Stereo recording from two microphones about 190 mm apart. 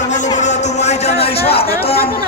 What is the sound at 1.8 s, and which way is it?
Speech, 30° left (ahead or behind).